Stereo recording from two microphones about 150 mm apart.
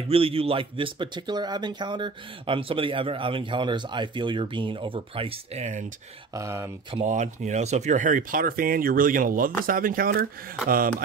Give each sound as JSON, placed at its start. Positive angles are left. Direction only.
{"t": 0.1, "sound": "speech", "side_deg": -40}
{"t": 6.3, "sound": "speech", "side_deg": -20}
{"t": 7.1, "sound": "speech", "side_deg": -55}